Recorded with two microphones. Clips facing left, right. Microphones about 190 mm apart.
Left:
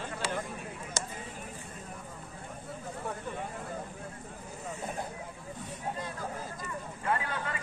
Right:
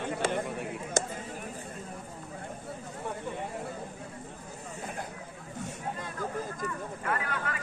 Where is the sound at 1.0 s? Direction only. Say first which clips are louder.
Right 8 dB; 50° right (ahead or behind).